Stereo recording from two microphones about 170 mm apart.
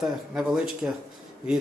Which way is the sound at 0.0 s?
5° right (ahead or behind).